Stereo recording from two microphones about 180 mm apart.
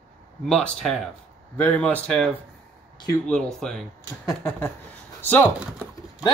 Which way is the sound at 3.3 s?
5° left (ahead or behind).